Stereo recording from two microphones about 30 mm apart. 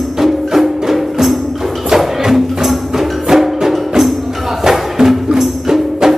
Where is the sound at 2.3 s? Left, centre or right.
Centre.